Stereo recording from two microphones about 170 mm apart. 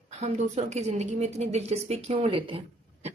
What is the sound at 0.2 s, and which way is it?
A woman's voice, 40° right (ahead or behind).